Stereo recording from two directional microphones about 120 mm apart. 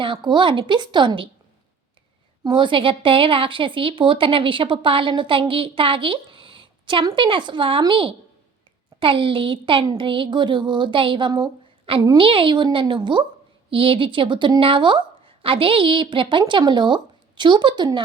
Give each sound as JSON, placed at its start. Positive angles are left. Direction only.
{"t": 0.0, "sound": "speech", "side_deg": -40}
{"t": 2.4, "sound": "speech", "side_deg": -40}
{"t": 11.3, "sound": "speech", "side_deg": -30}
{"t": 12.1, "sound": "speech", "side_deg": -45}